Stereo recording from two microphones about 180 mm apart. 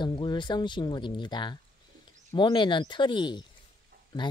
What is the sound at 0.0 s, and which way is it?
Speech, 25° left (ahead or behind).